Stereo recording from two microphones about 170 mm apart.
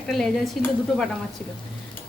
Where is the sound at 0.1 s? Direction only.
Centre (ahead or behind).